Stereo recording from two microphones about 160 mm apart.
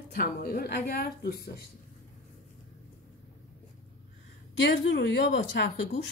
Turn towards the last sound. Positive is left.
turn(degrees=90)